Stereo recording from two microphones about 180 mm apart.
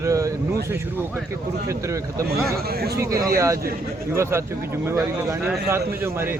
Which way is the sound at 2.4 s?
60° right (ahead or behind).